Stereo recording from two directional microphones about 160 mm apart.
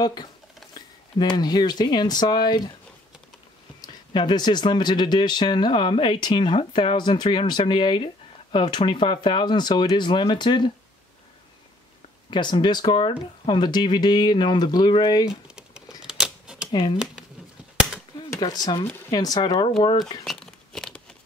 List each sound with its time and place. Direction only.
0.0 s speech: 25° left (ahead or behind)
3.8 s speech: 30° left (ahead or behind)
12.3 s speech: 30° left (ahead or behind)
15.2 s typewriter: 5° right (ahead or behind)
16.7 s speech: 25° left (ahead or behind)
17.7 s a sound: 5° right (ahead or behind)
18.4 s speech: 25° left (ahead or behind)
20.2 s tearing: 5° left (ahead or behind)